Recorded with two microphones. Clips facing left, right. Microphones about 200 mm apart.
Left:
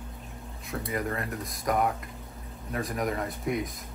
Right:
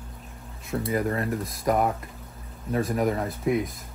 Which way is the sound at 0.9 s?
30° right (ahead or behind).